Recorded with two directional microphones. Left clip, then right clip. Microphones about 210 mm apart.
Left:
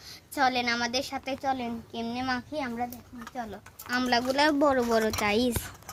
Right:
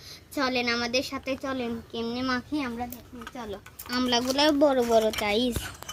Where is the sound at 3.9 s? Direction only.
20° left (ahead or behind).